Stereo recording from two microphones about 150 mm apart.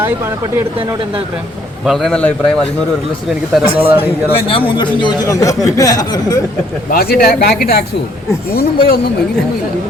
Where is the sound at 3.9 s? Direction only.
40° left (ahead or behind).